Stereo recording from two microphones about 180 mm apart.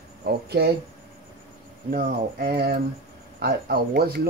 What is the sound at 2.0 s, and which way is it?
Speech, 60° right (ahead or behind).